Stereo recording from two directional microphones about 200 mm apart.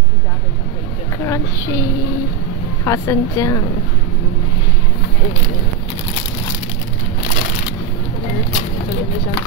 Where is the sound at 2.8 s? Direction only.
15° left (ahead or behind).